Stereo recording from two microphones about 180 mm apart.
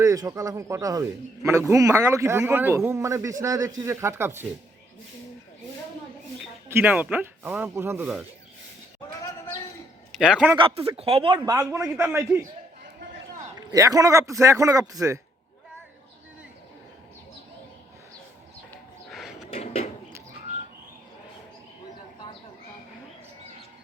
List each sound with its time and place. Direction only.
0.0 s a man's voice: 20° right (ahead or behind)
6.4 s speech: 10° right (ahead or behind)
10.1 s a man's voice: 5° right (ahead or behind)
10.5 s speech: 30° right (ahead or behind)
11.3 s a man's voice: 10° right (ahead or behind)
13.6 s a man's voice: 20° right (ahead or behind)
19.0 s a sound: centre (ahead or behind)
19.5 s a sound: 35° left (ahead or behind)